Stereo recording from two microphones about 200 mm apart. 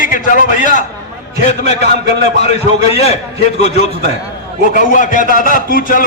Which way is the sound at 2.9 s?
30° left (ahead or behind).